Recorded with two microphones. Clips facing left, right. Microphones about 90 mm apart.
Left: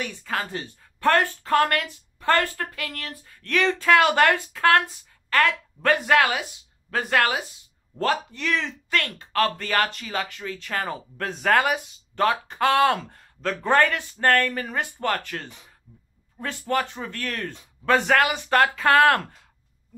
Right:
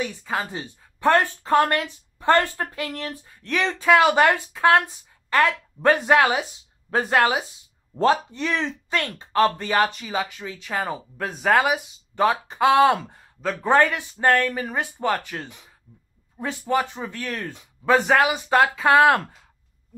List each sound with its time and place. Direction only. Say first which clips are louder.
0.0 s speech: right 2 dB; 15° right (ahead or behind)